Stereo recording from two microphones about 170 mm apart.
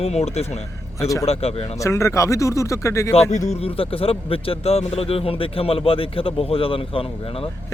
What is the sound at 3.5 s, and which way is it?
Speech, 35° left (ahead or behind).